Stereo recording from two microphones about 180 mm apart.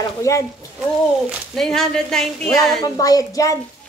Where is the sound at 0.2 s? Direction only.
15° left (ahead or behind).